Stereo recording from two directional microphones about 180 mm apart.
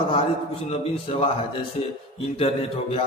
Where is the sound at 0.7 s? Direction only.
35° left (ahead or behind).